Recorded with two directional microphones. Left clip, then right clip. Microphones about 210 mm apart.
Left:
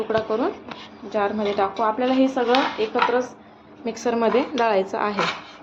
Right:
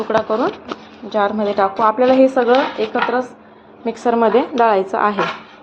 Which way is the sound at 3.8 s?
10° right (ahead or behind).